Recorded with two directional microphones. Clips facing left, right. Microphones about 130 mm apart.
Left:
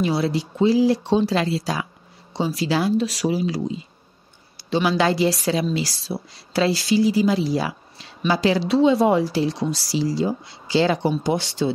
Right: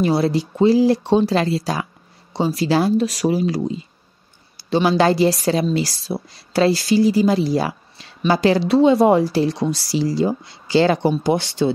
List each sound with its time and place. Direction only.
0.0 s a woman's voice: 45° right (ahead or behind)